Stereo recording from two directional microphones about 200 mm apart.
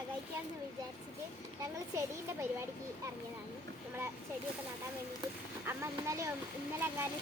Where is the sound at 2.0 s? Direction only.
15° right (ahead or behind).